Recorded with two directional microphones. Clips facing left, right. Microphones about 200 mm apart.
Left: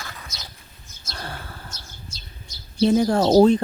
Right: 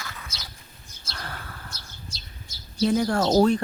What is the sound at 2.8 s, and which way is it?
Speech, 25° left (ahead or behind).